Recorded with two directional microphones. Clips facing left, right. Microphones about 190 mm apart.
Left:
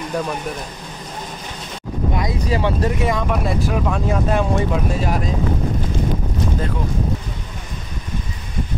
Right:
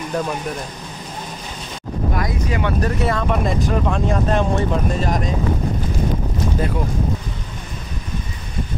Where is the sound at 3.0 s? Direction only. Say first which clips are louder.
Even; 15° left (ahead or behind).